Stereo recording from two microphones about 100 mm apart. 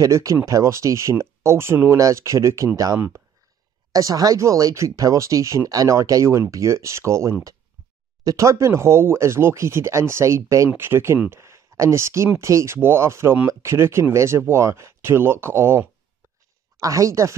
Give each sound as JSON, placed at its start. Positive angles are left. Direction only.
{"t": 0.0, "sound": "speech", "side_deg": -30}